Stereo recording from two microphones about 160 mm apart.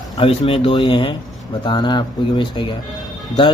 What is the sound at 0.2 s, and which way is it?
Speech, 35° left (ahead or behind).